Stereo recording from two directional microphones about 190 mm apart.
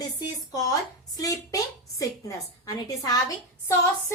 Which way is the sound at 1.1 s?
20° left (ahead or behind).